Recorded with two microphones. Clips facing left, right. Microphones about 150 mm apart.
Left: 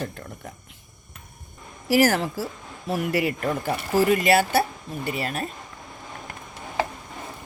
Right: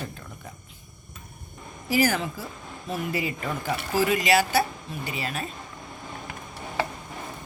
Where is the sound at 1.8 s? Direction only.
75° left (ahead or behind).